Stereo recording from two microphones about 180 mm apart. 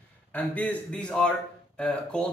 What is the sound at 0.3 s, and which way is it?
Speech, 10° left (ahead or behind).